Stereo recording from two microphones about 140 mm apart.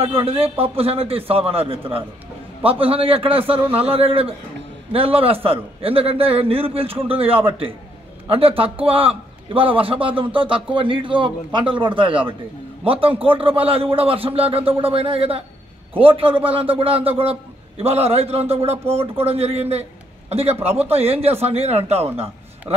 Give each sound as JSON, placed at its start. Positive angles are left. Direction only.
{"t": 0.0, "sound": "a man's voice", "side_deg": -45}